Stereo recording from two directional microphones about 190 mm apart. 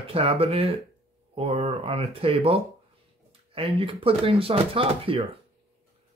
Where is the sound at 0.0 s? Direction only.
30° right (ahead or behind).